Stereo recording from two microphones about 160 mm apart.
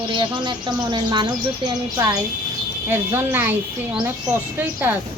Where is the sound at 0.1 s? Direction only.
30° right (ahead or behind).